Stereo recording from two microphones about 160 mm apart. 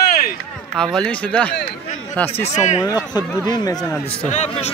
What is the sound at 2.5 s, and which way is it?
Speech, 45° left (ahead or behind).